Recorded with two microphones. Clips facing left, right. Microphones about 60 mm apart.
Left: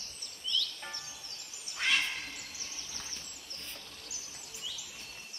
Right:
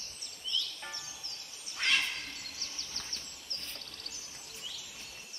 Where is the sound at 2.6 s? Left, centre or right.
Centre.